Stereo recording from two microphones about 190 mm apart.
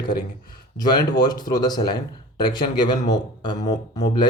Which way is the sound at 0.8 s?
20° left (ahead or behind).